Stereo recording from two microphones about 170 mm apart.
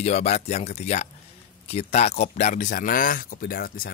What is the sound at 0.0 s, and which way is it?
Speech, 40° left (ahead or behind).